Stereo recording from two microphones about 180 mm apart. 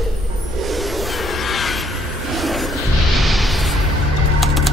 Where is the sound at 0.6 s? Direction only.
Centre (ahead or behind).